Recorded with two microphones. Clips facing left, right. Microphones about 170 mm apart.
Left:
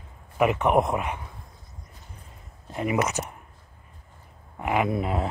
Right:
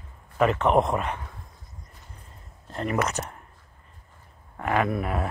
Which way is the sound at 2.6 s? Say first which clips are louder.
Left 1 dB; 10° left (ahead or behind).